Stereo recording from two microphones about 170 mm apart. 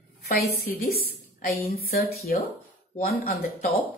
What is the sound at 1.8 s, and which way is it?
Speech, 65° left (ahead or behind).